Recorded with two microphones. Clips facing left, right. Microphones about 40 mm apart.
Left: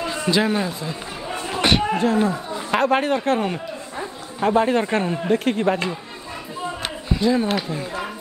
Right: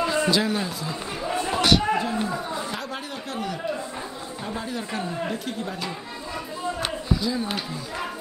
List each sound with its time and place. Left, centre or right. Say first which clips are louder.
0.3 s speech: left 3 dB; centre
1.6 s a sound: left 2 dB; left
2.0 s speech: left 6 dB; left
4.4 s speech: left 15 dB; left
7.2 s speech: left 8 dB; left